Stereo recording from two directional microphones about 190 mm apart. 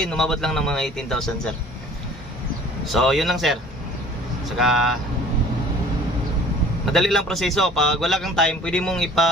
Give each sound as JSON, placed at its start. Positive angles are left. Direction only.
{"t": 0.0, "sound": "a man's voice", "side_deg": 0}
{"t": 2.9, "sound": "a man's voice", "side_deg": 0}
{"t": 6.9, "sound": "a man's voice", "side_deg": 0}